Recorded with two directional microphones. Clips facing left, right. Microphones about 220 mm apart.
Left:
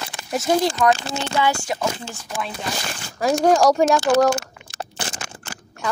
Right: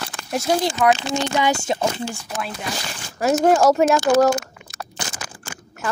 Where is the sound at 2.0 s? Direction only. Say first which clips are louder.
Right 2 dB; 5° right (ahead or behind).